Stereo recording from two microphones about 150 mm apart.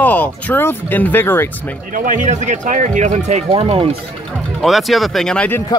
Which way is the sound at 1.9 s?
60° right (ahead or behind).